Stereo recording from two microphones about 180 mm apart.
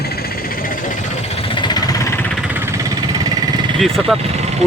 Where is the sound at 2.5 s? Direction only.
15° right (ahead or behind).